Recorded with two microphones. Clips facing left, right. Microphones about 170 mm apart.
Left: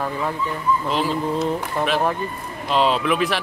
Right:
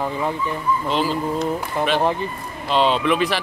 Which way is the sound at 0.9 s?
Centre (ahead or behind).